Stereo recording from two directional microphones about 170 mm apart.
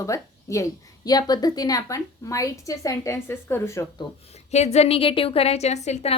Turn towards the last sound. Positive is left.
turn(degrees=40)  # may be behind; listen again after turning